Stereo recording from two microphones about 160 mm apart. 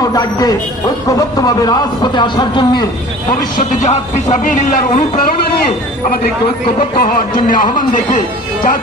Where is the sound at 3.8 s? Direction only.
45° left (ahead or behind).